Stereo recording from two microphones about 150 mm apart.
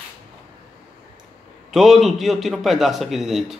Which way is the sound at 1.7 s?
Centre (ahead or behind).